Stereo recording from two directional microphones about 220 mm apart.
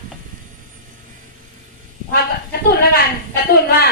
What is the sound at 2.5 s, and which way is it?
Speech, 45° left (ahead or behind).